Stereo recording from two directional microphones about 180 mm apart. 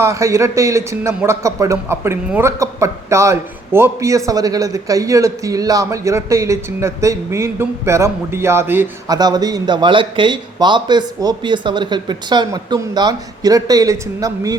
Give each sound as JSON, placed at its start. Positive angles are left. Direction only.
{"t": 0.0, "sound": "a man's voice", "side_deg": -15}
{"t": 9.1, "sound": "a man's voice", "side_deg": -20}